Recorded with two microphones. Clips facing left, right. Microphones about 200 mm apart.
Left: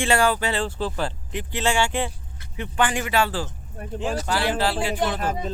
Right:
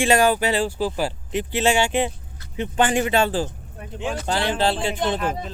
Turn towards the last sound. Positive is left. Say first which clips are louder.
# even
turn(degrees=40)  # may be behind; listen again after turning